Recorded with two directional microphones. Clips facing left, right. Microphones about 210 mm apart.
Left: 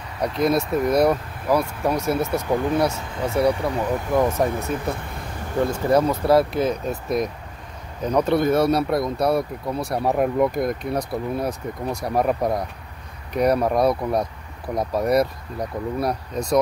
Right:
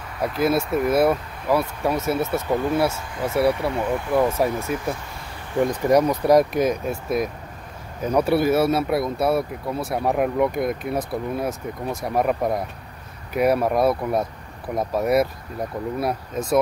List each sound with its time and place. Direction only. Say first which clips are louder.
0.2 s speech: even; 5° right (ahead or behind)
2.5 s speech: left 1 dB; 15° left (ahead or behind)
3.3 s speech: even; centre (ahead or behind)
7.1 s speech: even; centre (ahead or behind)